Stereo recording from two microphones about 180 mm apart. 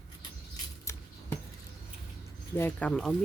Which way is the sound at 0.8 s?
15° left (ahead or behind).